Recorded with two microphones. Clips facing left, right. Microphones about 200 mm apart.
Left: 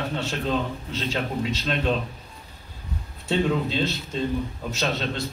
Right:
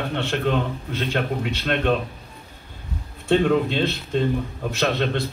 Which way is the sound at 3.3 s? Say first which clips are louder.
Right 5 dB; 55° right (ahead or behind).